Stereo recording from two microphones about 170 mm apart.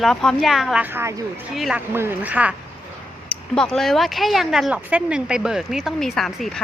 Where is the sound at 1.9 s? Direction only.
15° right (ahead or behind).